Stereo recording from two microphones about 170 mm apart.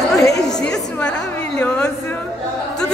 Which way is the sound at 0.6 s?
5° left (ahead or behind).